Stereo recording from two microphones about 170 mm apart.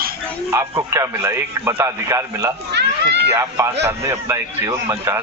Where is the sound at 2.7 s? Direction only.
85° right.